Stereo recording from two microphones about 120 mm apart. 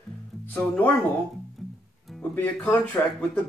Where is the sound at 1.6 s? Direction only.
Centre (ahead or behind).